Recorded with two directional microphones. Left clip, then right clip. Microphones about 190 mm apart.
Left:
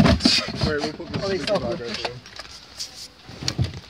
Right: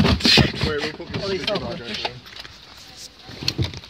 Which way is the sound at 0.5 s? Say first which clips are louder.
Right 1 dB; centre (ahead or behind).